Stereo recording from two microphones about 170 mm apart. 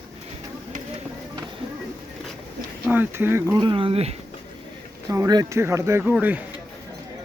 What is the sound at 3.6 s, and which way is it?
Speech, 30° right (ahead or behind).